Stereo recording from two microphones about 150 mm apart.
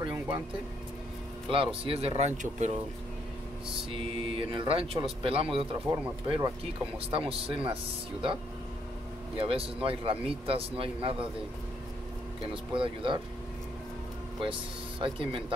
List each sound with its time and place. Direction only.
1.5 s speech: 35° right (ahead or behind)
3.9 s speech: 35° right (ahead or behind)
9.4 s speech: 35° right (ahead or behind)
12.7 s speech: 35° right (ahead or behind)
14.4 s speech: 35° right (ahead or behind)